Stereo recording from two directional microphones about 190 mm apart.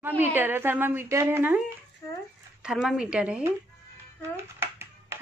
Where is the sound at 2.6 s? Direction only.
5° right (ahead or behind).